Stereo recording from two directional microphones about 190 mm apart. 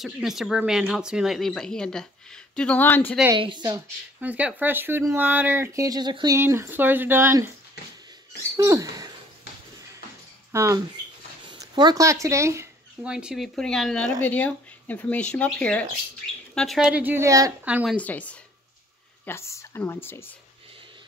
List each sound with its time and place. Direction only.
0.0 s speech: centre (ahead or behind)
3.3 s a woman's voice: 25° right (ahead or behind)
4.2 s speech: 10° right (ahead or behind)
8.5 s speech: 15° right (ahead or behind)
10.5 s speech: 15° right (ahead or behind)
11.4 s a sound: 25° right (ahead or behind)
13.1 s speech: 5° right (ahead or behind)
17.9 s speech: 10° left (ahead or behind)